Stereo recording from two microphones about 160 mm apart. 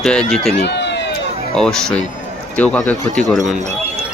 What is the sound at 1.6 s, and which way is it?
Speech, 5° left (ahead or behind).